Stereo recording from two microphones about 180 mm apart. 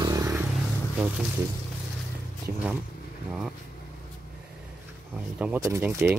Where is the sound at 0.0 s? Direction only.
15° right (ahead or behind).